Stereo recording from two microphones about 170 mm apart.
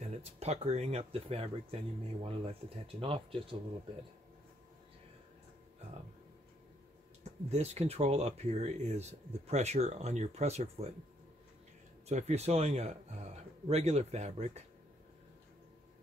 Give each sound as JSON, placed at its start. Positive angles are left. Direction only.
{"t": 0.0, "sound": "speech", "side_deg": -40}
{"t": 7.5, "sound": "speech", "side_deg": -40}
{"t": 12.1, "sound": "speech", "side_deg": -40}